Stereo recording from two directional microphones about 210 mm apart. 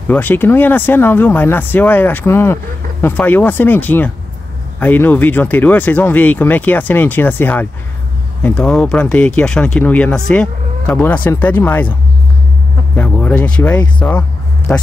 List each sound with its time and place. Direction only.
0.1 s speech: 10° left (ahead or behind)
12.9 s speech: 5° left (ahead or behind)